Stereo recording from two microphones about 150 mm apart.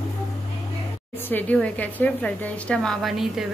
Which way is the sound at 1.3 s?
10° left (ahead or behind).